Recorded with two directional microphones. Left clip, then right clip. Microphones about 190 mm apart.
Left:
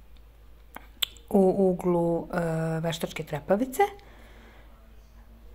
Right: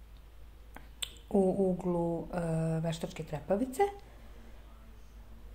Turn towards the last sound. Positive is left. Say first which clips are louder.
# left 6 dB
turn(degrees=20)  # may be behind; listen again after turning